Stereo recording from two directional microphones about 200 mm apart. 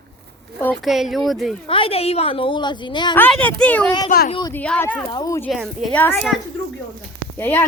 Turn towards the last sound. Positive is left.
turn(degrees=10)  # may be behind; listen again after turning